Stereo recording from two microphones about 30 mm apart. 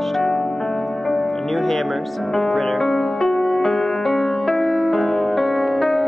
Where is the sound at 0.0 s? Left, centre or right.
Centre.